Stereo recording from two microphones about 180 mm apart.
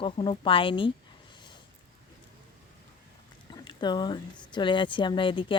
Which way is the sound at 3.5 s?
25° left (ahead or behind).